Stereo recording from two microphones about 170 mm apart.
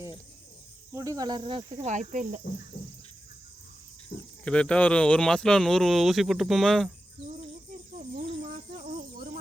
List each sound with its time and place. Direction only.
0.9 s cricket: 20° right (ahead or behind)
1.8 s speech: 45° right (ahead or behind)
4.4 s speech: 5° left (ahead or behind)
8.1 s cricket: 50° right (ahead or behind)